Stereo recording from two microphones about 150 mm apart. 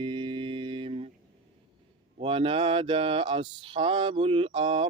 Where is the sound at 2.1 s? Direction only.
40° right (ahead or behind).